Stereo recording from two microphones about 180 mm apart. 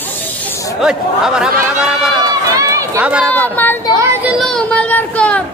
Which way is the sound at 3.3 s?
10° left (ahead or behind).